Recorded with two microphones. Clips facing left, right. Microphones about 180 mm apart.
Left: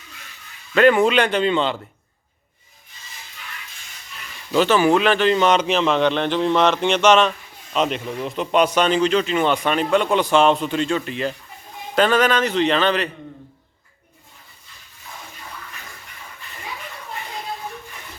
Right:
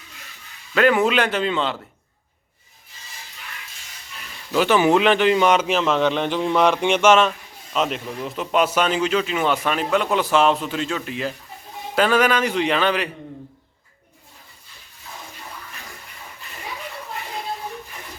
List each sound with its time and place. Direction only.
0.7 s speech: 5° right (ahead or behind)
4.5 s speech: 10° right (ahead or behind)